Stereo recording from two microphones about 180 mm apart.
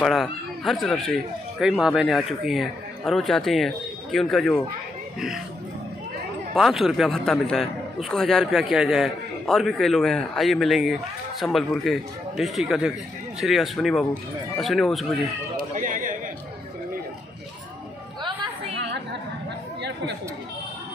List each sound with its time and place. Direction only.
0.0 s a man's voice: centre (ahead or behind)
6.5 s a man's voice: centre (ahead or behind)
15.5 s a sound: 50° right (ahead or behind)